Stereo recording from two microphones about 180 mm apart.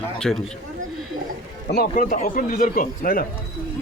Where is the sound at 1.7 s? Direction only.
55° left (ahead or behind).